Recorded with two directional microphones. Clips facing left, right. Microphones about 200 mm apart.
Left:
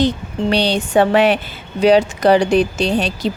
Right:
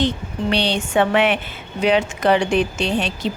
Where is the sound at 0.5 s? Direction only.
40° left (ahead or behind).